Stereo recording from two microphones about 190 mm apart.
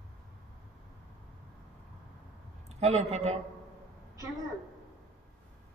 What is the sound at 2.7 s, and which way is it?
Speech, 35° right (ahead or behind).